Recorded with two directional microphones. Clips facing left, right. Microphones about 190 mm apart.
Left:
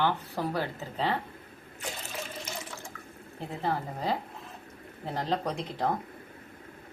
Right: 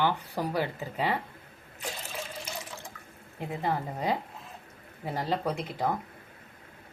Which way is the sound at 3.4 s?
15° right (ahead or behind).